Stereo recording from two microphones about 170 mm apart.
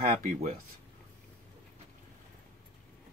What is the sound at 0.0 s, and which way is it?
Speech, 50° right (ahead or behind).